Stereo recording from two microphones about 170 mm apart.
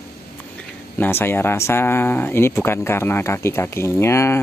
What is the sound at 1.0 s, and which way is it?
Speech, 15° left (ahead or behind).